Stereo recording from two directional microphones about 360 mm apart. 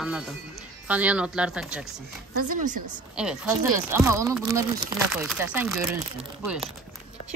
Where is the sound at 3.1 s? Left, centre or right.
Centre.